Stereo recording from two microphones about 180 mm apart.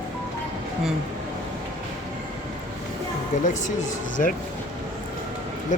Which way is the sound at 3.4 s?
45° left (ahead or behind).